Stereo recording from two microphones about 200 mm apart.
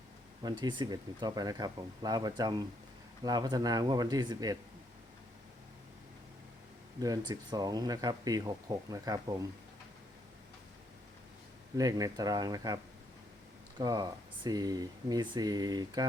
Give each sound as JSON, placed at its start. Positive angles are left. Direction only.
{"t": 0.4, "sound": "speech", "side_deg": -20}
{"t": 7.0, "sound": "speech", "side_deg": -20}
{"t": 11.8, "sound": "speech", "side_deg": -20}